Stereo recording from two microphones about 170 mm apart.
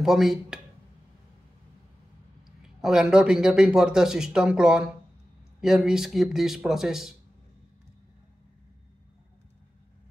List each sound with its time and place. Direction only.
0.0 s speech: centre (ahead or behind)
2.6 s speech: 5° right (ahead or behind)